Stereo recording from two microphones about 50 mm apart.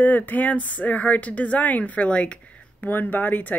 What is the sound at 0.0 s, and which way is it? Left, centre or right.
Speech, left.